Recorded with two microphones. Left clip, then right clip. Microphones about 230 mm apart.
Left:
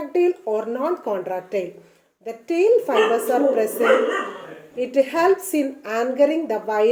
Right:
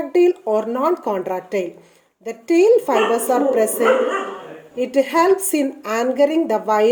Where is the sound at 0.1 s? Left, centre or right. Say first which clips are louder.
Right 4 dB; right.